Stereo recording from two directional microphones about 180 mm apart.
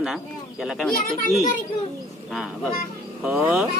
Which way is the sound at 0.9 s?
50° left (ahead or behind).